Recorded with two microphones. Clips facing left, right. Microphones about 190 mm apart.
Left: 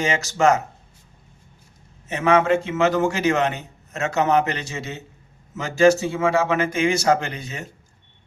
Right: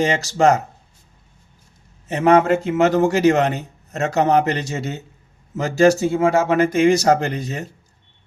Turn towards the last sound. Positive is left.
turn(degrees=-40)  # may be behind; listen again after turning